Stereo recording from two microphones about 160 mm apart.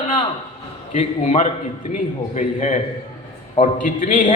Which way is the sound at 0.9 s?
45° left (ahead or behind).